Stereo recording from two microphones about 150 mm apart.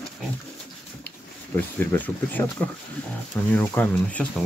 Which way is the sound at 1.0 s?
10° left (ahead or behind).